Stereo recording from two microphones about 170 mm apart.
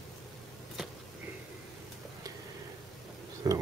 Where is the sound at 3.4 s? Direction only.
20° right (ahead or behind).